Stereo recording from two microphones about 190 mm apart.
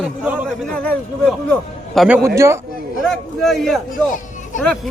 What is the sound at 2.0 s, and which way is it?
Speech, 10° right (ahead or behind).